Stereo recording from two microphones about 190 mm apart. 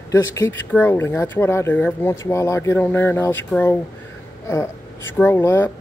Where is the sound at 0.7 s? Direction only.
10° left (ahead or behind).